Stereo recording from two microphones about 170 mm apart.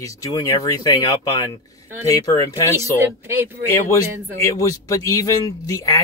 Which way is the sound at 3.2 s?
10° right (ahead or behind).